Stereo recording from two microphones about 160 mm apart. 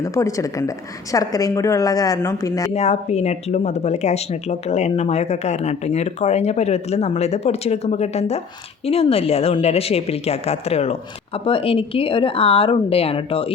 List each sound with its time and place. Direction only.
0.0 s speech: 20° left (ahead or behind)
2.7 s a woman's voice: 45° left (ahead or behind)